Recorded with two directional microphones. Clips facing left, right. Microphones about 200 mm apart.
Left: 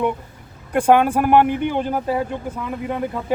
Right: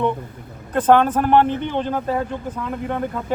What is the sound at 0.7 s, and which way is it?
Speech, 10° left (ahead or behind).